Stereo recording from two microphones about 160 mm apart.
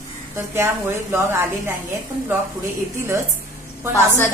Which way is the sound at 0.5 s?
15° right (ahead or behind).